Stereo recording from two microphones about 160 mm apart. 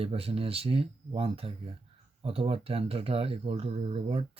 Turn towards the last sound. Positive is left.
turn(degrees=-40)  # may be behind; listen again after turning